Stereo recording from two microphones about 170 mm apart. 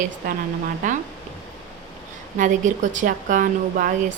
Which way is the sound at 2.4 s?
50° right (ahead or behind).